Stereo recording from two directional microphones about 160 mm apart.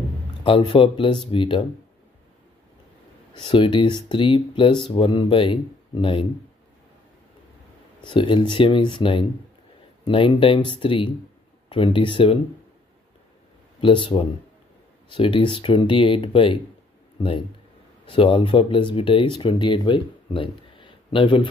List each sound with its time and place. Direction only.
0.4 s speech: 30° left (ahead or behind)
3.3 s speech: 30° left (ahead or behind)
8.0 s speech: 30° left (ahead or behind)
13.7 s a man's voice: 30° left (ahead or behind)